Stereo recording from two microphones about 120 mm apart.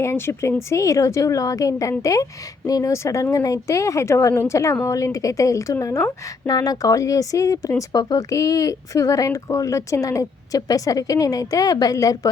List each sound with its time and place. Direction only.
0.0 s speech: 20° left (ahead or behind)